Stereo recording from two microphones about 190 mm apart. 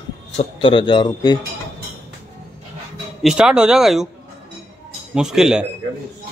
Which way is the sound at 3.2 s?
5° right (ahead or behind).